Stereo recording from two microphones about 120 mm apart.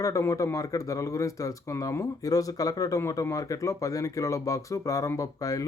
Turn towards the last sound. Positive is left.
turn(degrees=30)  # may be behind; listen again after turning